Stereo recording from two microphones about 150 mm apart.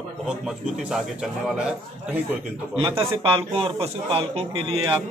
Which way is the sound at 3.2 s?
40° right (ahead or behind).